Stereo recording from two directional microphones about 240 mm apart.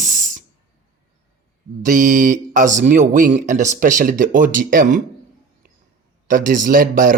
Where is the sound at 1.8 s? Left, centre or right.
Right.